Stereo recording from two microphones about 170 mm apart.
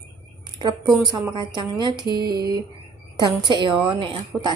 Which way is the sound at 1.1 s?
25° right (ahead or behind).